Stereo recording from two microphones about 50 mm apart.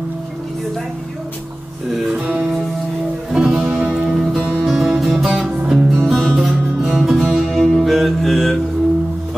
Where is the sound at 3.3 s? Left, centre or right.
Centre.